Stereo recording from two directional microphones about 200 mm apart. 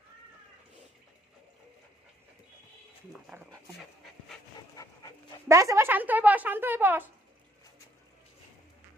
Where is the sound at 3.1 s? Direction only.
5° right (ahead or behind).